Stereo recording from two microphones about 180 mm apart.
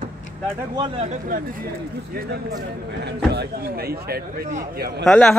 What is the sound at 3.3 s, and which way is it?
A man's voice, 60° right (ahead or behind).